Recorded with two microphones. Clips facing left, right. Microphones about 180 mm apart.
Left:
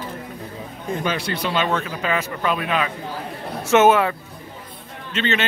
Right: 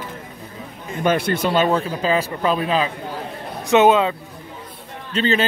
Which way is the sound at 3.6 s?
15° right (ahead or behind).